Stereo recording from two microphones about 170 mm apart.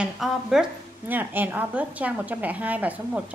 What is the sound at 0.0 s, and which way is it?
A woman's voice, 5° right (ahead or behind).